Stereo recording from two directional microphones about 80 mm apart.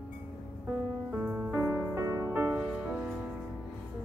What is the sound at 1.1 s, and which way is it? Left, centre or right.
Music, right.